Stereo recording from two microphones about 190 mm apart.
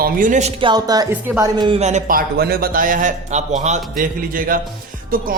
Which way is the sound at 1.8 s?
40° right (ahead or behind).